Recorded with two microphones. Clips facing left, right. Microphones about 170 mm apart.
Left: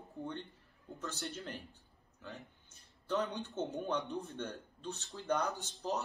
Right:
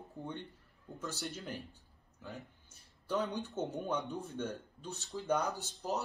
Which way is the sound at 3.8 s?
Centre (ahead or behind).